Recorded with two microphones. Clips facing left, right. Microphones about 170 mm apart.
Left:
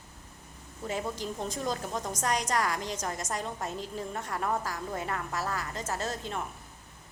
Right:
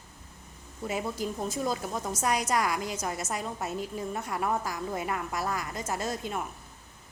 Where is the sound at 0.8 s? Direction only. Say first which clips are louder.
Right 2 dB; 10° right (ahead or behind).